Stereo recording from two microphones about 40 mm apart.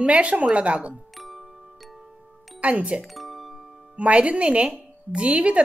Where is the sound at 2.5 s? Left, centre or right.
Right.